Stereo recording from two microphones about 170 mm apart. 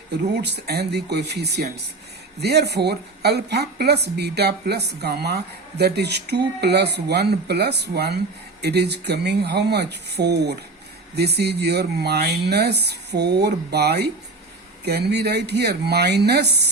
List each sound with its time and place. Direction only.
0.4 s a woman's voice: 75° right (ahead or behind)